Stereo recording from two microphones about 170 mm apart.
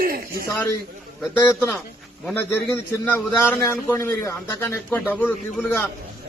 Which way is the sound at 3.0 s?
10° left (ahead or behind).